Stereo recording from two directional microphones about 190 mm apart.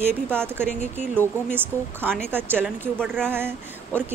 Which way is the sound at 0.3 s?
10° right (ahead or behind).